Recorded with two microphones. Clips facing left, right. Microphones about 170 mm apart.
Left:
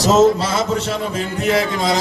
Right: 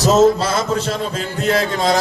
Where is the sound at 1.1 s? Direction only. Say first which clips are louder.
Left 1 dB; 20° left (ahead or behind).